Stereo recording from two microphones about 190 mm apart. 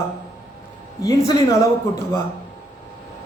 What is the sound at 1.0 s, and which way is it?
Speech, 15° left (ahead or behind).